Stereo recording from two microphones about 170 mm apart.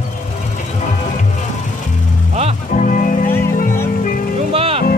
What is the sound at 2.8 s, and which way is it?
Music, 50° left (ahead or behind).